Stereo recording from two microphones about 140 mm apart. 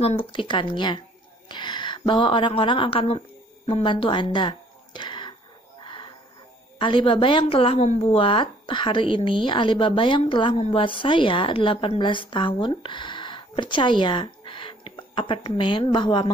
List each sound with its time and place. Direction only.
0.0 s a woman's voice: 40° left (ahead or behind)
5.8 s music: 35° left (ahead or behind)
6.8 s a woman's voice: 35° left (ahead or behind)